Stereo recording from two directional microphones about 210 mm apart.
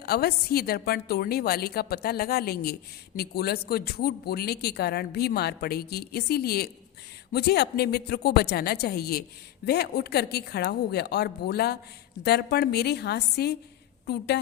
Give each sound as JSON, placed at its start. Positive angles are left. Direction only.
{"t": 0.0, "sound": "speech", "side_deg": 50}